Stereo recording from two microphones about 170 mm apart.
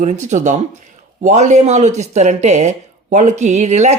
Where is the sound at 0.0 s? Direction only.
45° right (ahead or behind).